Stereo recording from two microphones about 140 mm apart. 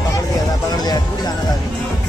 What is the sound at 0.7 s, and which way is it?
Music, 30° left (ahead or behind).